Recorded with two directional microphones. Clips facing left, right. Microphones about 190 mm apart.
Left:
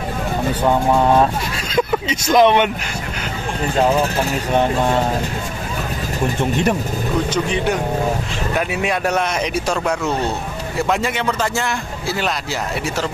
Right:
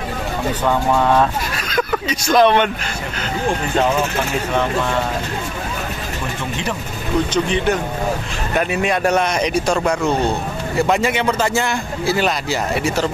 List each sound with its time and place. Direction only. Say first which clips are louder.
0.7 s a man's voice: left 1 dB; 20° left (ahead or behind)
7.4 s a man's voice: right 1 dB; 5° left (ahead or behind)